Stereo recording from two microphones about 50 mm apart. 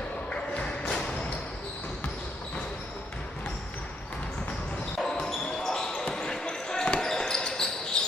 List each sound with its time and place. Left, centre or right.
0.3 s music: left
4.9 s basketball bounce: centre